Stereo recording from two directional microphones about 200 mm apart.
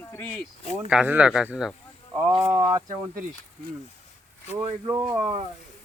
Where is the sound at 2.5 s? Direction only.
20° right (ahead or behind).